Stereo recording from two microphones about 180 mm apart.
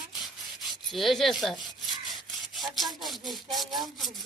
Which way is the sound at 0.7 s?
Centre (ahead or behind).